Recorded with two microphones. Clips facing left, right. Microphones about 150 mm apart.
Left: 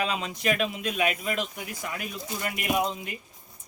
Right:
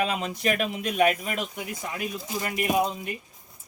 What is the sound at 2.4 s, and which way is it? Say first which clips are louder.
Speech: right 4 dB; 40° right (ahead or behind).